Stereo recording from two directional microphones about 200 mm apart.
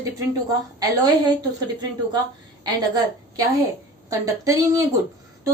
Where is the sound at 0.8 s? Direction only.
20° right (ahead or behind).